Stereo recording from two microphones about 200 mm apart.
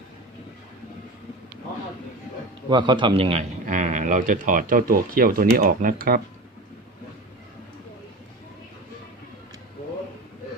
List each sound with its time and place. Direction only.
2.6 s a man's voice: 25° right (ahead or behind)
3.7 s speech: 40° right (ahead or behind)